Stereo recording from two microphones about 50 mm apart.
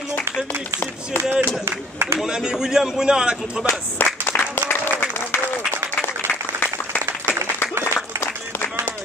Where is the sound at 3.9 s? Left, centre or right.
Left.